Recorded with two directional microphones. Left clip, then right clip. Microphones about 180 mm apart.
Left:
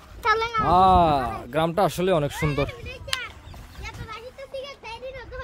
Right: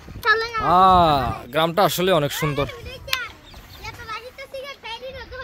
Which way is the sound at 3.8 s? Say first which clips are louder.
Right 5 dB; 30° right (ahead or behind).